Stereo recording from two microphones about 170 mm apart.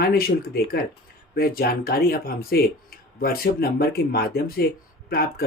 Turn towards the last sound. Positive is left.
turn(degrees=60)  # may be behind; listen again after turning